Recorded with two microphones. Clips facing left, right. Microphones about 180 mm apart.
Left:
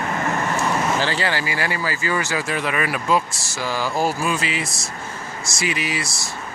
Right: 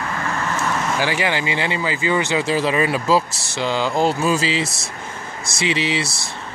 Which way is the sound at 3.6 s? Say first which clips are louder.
Right 3 dB; 20° right (ahead or behind).